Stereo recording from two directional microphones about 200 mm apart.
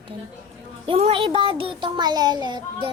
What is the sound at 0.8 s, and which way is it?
A child's voice, 30° right (ahead or behind).